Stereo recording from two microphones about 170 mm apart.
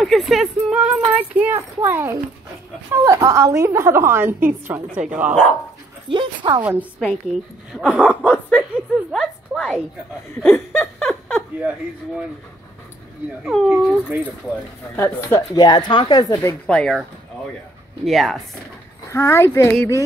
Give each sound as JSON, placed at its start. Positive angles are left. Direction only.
{"t": 0.0, "sound": "a woman's voice", "side_deg": 0}
{"t": 6.0, "sound": "dog", "side_deg": -30}
{"t": 6.6, "sound": "a woman's voice", "side_deg": -10}
{"t": 13.4, "sound": "speech", "side_deg": -5}
{"t": 15.0, "sound": "speech", "side_deg": 15}
{"t": 15.5, "sound": "speech", "side_deg": 25}
{"t": 16.6, "sound": "speech", "side_deg": 5}
{"t": 18.0, "sound": "speech", "side_deg": 0}
{"t": 19.0, "sound": "speech", "side_deg": 15}